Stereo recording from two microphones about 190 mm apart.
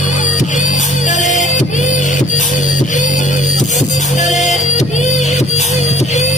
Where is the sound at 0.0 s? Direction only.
40° left (ahead or behind).